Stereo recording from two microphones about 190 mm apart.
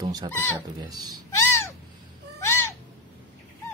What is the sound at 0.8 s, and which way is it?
Speech, 20° right (ahead or behind).